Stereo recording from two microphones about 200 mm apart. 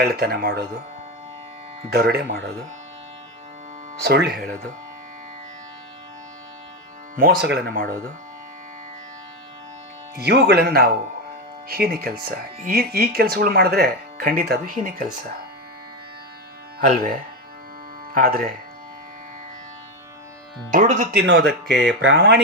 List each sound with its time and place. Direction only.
0.0 s speech: 50° right (ahead or behind)
1.9 s speech: 55° right (ahead or behind)
4.0 s speech: 55° right (ahead or behind)
7.2 s speech: 55° right (ahead or behind)
10.2 s speech: 55° right (ahead or behind)
18.1 s speech: 45° right (ahead or behind)
20.7 s speech: 40° right (ahead or behind)
21.2 s speech: 55° right (ahead or behind)